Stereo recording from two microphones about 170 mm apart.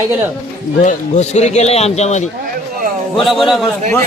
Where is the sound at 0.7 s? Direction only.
45° left (ahead or behind).